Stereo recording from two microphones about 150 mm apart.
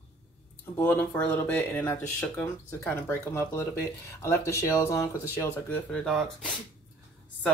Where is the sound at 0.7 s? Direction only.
15° left (ahead or behind).